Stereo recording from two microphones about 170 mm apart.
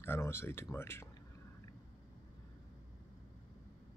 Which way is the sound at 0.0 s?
15° left (ahead or behind).